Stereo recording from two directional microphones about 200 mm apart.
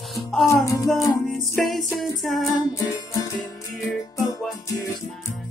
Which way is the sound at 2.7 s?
15° left (ahead or behind).